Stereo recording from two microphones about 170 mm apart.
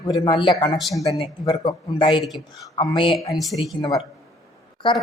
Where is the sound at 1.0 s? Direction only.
25° left (ahead or behind).